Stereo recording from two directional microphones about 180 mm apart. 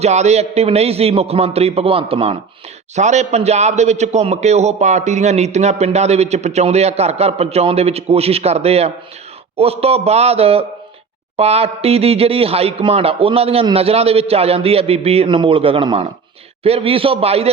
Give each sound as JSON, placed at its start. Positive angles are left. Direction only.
{"t": 0.0, "sound": "a man's voice", "side_deg": -40}